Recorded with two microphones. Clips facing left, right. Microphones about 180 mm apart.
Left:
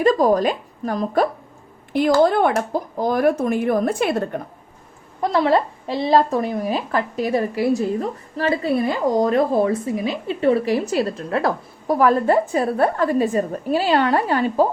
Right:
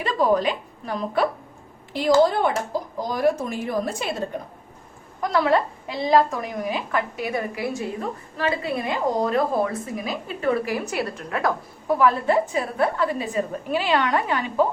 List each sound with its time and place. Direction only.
0.0 s a woman's voice: 40° left (ahead or behind)
1.9 s speech: 55° left (ahead or behind)
5.2 s a woman's voice: 30° left (ahead or behind)